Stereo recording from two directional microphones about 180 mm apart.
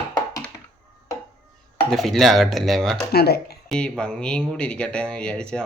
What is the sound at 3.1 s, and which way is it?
Speech, 60° left (ahead or behind).